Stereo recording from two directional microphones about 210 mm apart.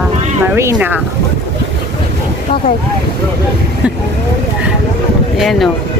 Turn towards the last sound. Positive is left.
turn(degrees=0)  # may be behind; listen again after turning